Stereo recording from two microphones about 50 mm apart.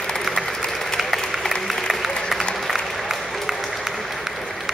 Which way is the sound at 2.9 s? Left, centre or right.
Centre.